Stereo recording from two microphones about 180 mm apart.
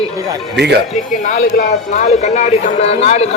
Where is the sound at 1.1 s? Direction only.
40° left (ahead or behind).